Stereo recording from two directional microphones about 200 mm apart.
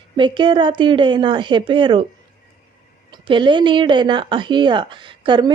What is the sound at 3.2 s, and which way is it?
Speech, 25° right (ahead or behind).